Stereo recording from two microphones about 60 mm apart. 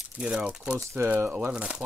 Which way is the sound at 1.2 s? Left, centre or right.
Right.